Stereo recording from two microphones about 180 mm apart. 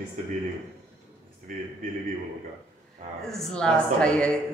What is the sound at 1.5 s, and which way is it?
Speech, 45° right (ahead or behind).